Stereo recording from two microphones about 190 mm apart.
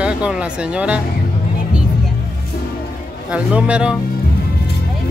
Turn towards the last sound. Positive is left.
turn(degrees=-5)  # may be behind; listen again after turning